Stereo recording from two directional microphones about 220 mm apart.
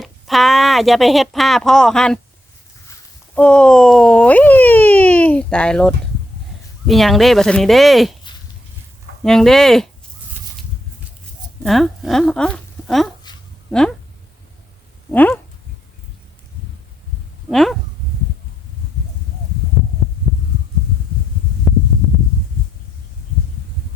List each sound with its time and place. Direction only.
0.0 s speech: centre (ahead or behind)
3.3 s speech: 5° left (ahead or behind)
9.2 s speech: centre (ahead or behind)
11.6 s speech: centre (ahead or behind)
13.3 s a sound: 20° left (ahead or behind)
13.7 s speech: 5° left (ahead or behind)
15.1 s a sound: 5° left (ahead or behind)
17.5 s speech: centre (ahead or behind)
21.7 s heart sounds: centre (ahead or behind)